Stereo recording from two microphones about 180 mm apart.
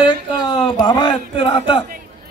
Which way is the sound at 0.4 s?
25° left (ahead or behind).